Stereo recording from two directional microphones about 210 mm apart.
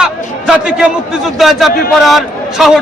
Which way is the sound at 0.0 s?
5° right (ahead or behind).